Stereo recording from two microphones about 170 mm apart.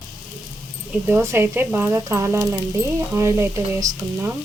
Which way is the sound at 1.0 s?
15° right (ahead or behind).